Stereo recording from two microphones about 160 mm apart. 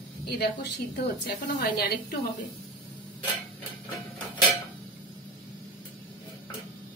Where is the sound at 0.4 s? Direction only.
90° left.